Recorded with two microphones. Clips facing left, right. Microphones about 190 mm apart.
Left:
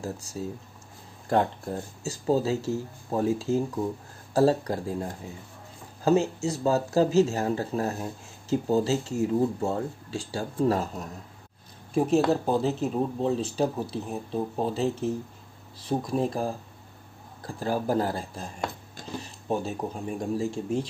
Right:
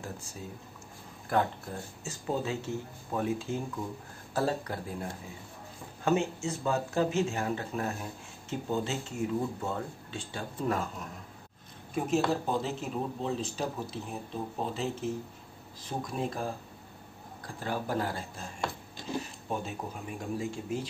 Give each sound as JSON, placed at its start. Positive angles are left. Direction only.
{"t": 0.0, "sound": "speech", "side_deg": 40}
{"t": 6.0, "sound": "speech", "side_deg": 35}
{"t": 17.6, "sound": "speech", "side_deg": 40}
{"t": 19.5, "sound": "speech", "side_deg": 40}